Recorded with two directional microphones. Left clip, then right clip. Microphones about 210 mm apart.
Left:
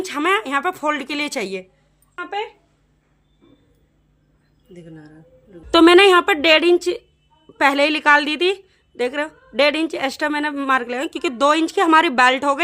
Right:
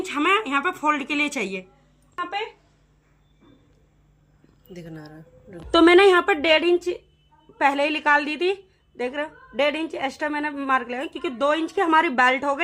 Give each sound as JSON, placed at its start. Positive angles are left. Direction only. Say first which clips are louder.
{"t": 0.0, "sound": "speech", "louder": "left 2 dB", "side_deg": 55}
{"t": 4.7, "sound": "speech", "louder": "right 1 dB", "side_deg": -10}
{"t": 5.7, "sound": "a woman's voice", "louder": "left 4 dB", "side_deg": 25}